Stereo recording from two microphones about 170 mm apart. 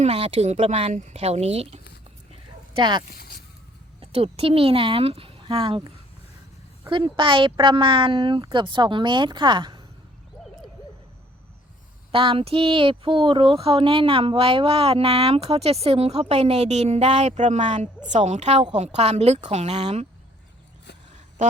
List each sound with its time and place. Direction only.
0.0 s speech: 35° right (ahead or behind)
3.2 s a sound: 65° left (ahead or behind)
4.0 s speech: 35° right (ahead or behind)
6.9 s speech: 30° right (ahead or behind)
12.1 s speech: 30° right (ahead or behind)